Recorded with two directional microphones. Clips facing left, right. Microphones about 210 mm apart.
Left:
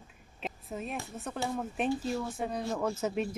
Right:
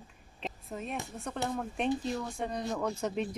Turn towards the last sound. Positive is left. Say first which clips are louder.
# left 1 dB
turn(degrees=5)  # may be behind; listen again after turning